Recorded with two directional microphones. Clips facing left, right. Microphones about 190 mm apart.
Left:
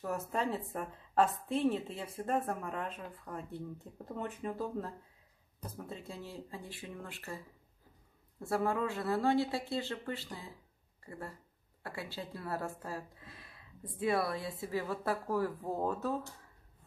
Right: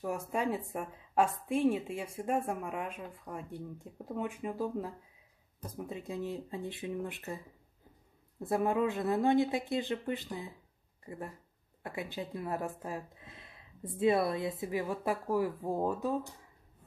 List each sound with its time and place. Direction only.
0.0 s a woman's voice: 15° right (ahead or behind)